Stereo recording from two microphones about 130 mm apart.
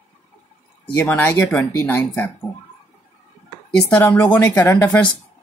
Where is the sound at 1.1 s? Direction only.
15° left (ahead or behind).